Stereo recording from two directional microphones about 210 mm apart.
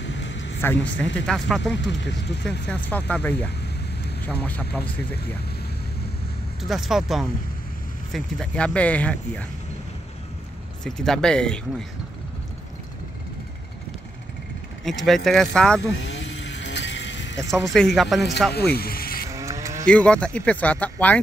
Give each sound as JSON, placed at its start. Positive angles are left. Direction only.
{"t": 0.0, "sound": "a sound", "side_deg": 60}
{"t": 0.6, "sound": "speech", "side_deg": 10}
{"t": 1.9, "sound": "speech", "side_deg": 55}
{"t": 2.7, "sound": "speech", "side_deg": 5}
{"t": 6.6, "sound": "speech", "side_deg": 0}
{"t": 10.8, "sound": "speech", "side_deg": 5}
{"t": 14.9, "sound": "speech", "side_deg": 0}
{"t": 15.9, "sound": "vehicle", "side_deg": 60}
{"t": 17.7, "sound": "speech", "side_deg": 0}
{"t": 18.5, "sound": "speech", "side_deg": 50}
{"t": 19.3, "sound": "cattle", "side_deg": -15}
{"t": 19.9, "sound": "speech", "side_deg": 5}